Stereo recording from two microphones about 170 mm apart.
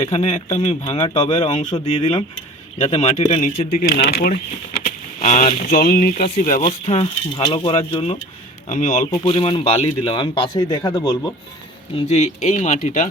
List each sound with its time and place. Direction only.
0.0 s speech: 35° left (ahead or behind)
3.8 s speech: 75° left (ahead or behind)
4.9 s speech: 45° left (ahead or behind)
6.2 s speech: 40° left (ahead or behind)
8.7 s speech: 45° left (ahead or behind)
9.2 s speech: 35° left (ahead or behind)
11.9 s speech: 40° left (ahead or behind)